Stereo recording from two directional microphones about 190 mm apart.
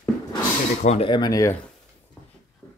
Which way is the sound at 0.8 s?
30° left (ahead or behind).